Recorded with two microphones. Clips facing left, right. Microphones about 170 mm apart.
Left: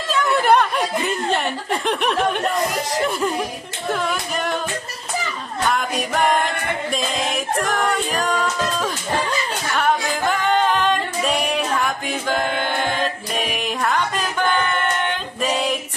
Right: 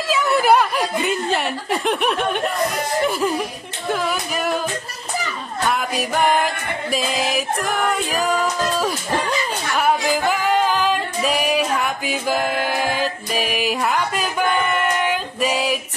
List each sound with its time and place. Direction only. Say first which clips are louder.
0.1 s chuckle: even; 5° right (ahead or behind)
2.2 s music: left 1 dB; centre (ahead or behind)
5.7 s music: even; 5° right (ahead or behind)